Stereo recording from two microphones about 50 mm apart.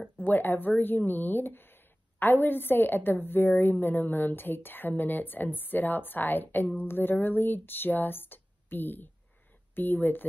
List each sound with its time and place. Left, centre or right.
0.2 s speech: left